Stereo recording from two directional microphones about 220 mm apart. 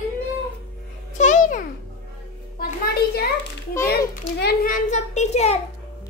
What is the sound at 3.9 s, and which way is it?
A child's voice, 45° left (ahead or behind).